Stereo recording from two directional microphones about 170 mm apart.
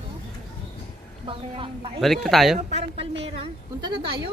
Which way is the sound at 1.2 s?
30° right (ahead or behind).